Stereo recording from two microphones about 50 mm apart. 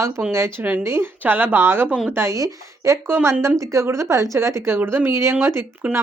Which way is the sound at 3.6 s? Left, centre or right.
Right.